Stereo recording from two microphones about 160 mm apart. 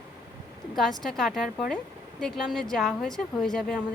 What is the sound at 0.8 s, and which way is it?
Speech, centre (ahead or behind).